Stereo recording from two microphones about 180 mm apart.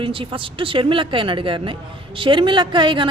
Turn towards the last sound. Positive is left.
turn(degrees=-25)  # may be behind; listen again after turning